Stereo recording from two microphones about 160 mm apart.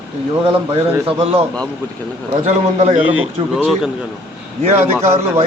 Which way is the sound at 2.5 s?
45° right (ahead or behind).